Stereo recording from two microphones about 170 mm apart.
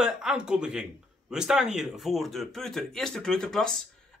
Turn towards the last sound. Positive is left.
turn(degrees=5)  # may be behind; listen again after turning